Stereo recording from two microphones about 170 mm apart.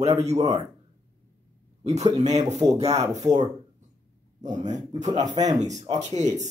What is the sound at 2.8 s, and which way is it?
Speech, 40° right (ahead or behind).